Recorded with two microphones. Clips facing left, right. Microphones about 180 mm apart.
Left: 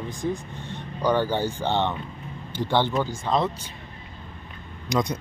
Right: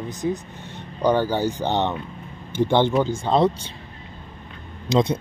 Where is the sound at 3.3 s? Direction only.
30° right (ahead or behind).